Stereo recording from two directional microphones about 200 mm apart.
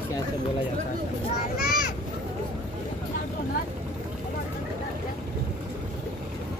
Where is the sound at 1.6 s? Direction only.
45° left (ahead or behind).